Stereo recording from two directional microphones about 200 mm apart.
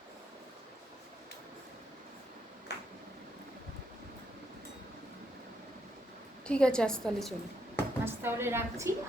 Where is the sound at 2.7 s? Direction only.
55° left (ahead or behind).